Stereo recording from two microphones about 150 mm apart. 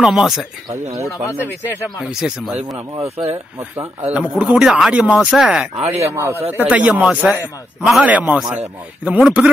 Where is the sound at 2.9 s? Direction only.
40° right (ahead or behind).